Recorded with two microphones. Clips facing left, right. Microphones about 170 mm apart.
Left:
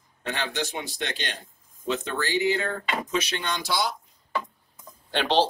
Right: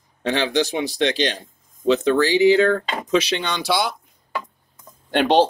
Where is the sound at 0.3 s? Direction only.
90° right.